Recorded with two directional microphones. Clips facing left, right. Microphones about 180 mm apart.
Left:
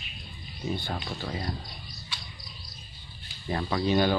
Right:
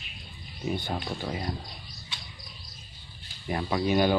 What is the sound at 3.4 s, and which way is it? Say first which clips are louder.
Speech: even; 15° right (ahead or behind).